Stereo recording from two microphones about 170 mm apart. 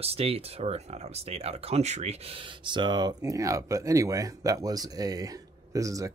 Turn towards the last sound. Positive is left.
turn(degrees=-20)  # may be behind; listen again after turning